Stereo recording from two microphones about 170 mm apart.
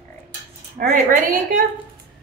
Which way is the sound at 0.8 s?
50° right (ahead or behind).